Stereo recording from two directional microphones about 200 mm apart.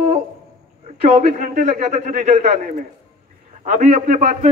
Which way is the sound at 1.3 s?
40° right (ahead or behind).